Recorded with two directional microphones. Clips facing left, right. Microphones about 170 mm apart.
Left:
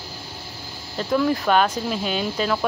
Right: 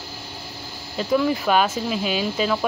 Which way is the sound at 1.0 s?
5° right (ahead or behind).